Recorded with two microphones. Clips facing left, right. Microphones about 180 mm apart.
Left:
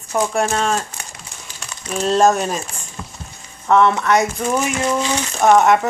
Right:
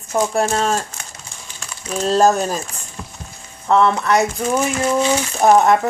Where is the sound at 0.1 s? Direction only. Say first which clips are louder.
Right 1 dB; 35° right (ahead or behind).